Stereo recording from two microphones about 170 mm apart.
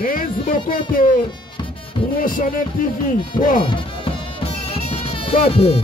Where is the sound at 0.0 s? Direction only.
55° left (ahead or behind).